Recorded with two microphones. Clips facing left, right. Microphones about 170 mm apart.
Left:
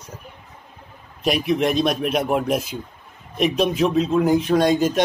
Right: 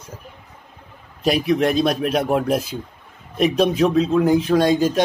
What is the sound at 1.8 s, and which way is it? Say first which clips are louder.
A man's voice: right 1 dB; 35° right (ahead or behind).